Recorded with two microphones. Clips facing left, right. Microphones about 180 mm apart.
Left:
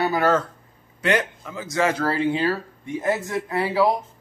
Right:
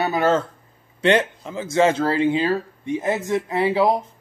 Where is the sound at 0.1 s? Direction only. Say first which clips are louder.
Right 1 dB; 25° right (ahead or behind).